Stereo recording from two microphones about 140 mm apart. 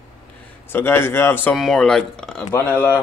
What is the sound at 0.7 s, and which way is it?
Speech, 15° left (ahead or behind).